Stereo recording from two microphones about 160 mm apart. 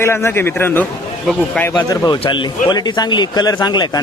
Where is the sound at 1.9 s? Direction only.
30° left (ahead or behind).